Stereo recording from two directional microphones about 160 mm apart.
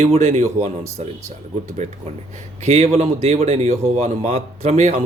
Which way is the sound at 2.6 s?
45° right (ahead or behind).